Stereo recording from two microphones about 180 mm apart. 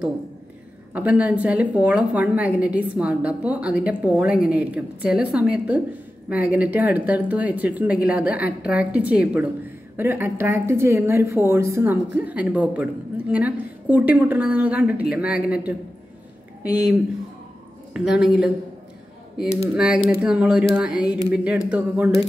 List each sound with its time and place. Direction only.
0.9 s a woman's voice: 10° right (ahead or behind)
17.9 s speech: 5° right (ahead or behind)
19.6 s a woman's voice: 5° right (ahead or behind)